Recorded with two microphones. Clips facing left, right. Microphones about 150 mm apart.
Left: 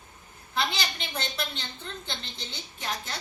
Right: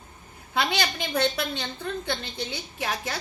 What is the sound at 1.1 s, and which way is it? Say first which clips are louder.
A woman's voice: right 9 dB; 65° right (ahead or behind).